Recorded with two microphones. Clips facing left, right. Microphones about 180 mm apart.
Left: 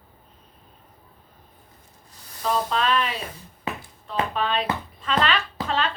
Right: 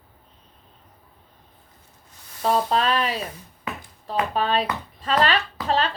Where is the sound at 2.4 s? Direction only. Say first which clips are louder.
Right 3 dB; 40° right (ahead or behind).